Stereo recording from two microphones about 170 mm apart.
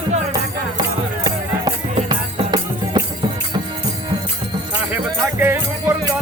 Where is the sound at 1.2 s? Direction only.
25° right (ahead or behind).